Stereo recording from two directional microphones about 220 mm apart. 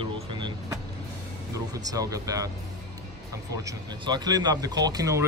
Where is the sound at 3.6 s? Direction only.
20° right (ahead or behind).